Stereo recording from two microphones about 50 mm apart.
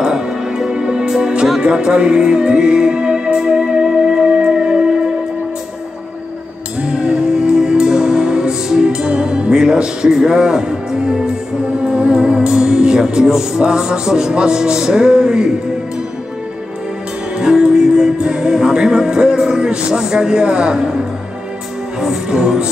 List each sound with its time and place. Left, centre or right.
0.0 s music: centre
6.8 s music: centre
17.4 s music: centre
22.0 s music: centre